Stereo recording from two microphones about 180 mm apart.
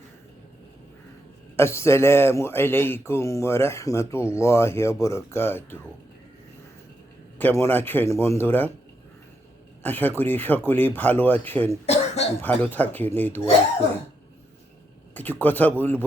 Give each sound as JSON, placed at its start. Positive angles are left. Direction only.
{"t": 1.5, "sound": "speech", "side_deg": 15}
{"t": 7.3, "sound": "speech", "side_deg": 10}
{"t": 9.8, "sound": "speech", "side_deg": 10}
{"t": 11.9, "sound": "cough", "side_deg": 35}
{"t": 12.4, "sound": "speech", "side_deg": 10}
{"t": 15.1, "sound": "speech", "side_deg": 10}